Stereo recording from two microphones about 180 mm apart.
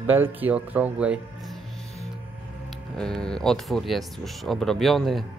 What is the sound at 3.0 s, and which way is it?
Speech, 5° left (ahead or behind).